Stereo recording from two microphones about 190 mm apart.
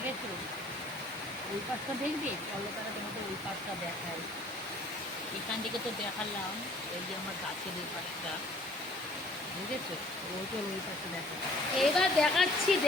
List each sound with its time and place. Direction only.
11.8 s speech: centre (ahead or behind)